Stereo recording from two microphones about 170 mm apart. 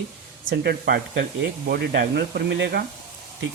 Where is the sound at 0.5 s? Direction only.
70° right (ahead or behind).